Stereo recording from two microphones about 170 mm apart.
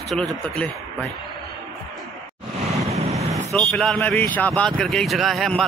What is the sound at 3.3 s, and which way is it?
Speech, centre (ahead or behind).